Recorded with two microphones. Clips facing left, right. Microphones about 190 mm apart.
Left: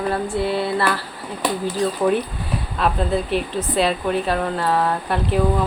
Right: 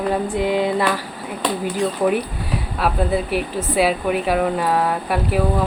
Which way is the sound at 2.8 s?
10° right (ahead or behind).